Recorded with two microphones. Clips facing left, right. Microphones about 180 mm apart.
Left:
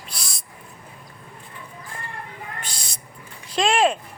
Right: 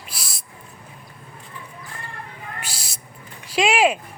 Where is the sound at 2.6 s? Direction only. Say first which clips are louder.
Right 1 dB; 5° right (ahead or behind).